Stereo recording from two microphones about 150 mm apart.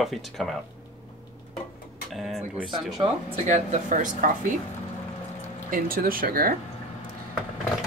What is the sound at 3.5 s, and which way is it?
Speech, 55° right (ahead or behind).